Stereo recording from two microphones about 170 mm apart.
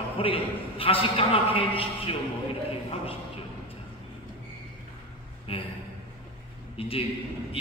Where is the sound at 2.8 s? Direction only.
35° left (ahead or behind).